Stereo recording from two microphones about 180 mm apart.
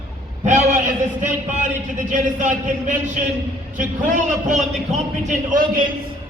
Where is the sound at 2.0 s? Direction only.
45° right (ahead or behind).